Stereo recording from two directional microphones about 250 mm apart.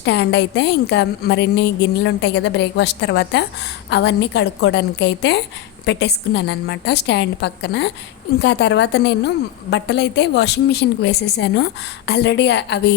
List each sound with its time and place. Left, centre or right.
0.0 s a woman's voice: left